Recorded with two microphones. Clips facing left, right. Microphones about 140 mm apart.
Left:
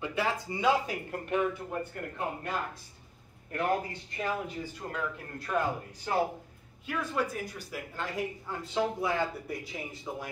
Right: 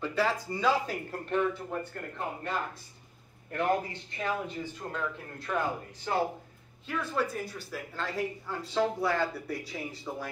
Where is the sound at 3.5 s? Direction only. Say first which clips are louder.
Right 1 dB; 5° left (ahead or behind).